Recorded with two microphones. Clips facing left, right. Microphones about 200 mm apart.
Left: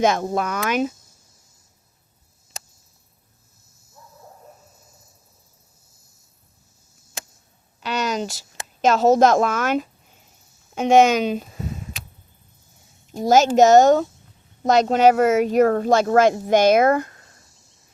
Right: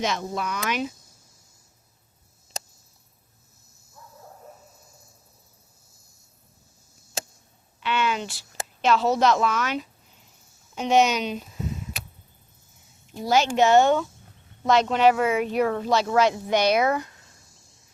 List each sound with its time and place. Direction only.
0.0 s speech: 50° left (ahead or behind)
7.8 s a woman's voice: 40° left (ahead or behind)
13.1 s speech: 45° left (ahead or behind)